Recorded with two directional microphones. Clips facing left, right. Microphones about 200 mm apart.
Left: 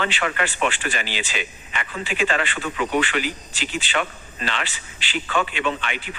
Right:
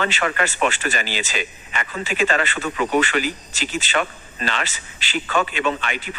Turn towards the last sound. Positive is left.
turn(degrees=-45)  # may be behind; listen again after turning